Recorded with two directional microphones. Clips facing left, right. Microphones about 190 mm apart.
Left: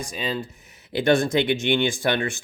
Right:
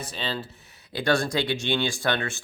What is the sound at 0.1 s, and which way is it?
Speech, 15° left (ahead or behind).